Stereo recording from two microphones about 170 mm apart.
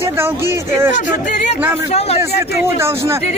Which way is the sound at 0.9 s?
45° left (ahead or behind).